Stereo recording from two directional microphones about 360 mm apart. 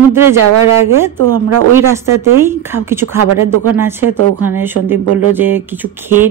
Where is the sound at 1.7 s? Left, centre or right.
Centre.